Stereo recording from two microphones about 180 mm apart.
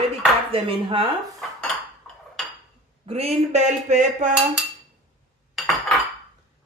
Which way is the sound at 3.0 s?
35° right (ahead or behind).